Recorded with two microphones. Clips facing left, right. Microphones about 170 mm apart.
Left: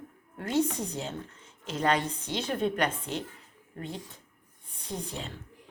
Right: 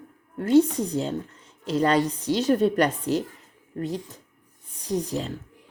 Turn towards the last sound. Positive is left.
turn(degrees=-40)  # may be behind; listen again after turning